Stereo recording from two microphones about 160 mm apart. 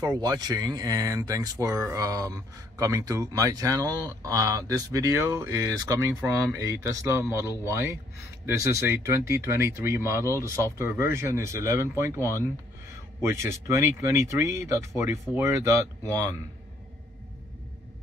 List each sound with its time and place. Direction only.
0.0 s speech: 25° right (ahead or behind)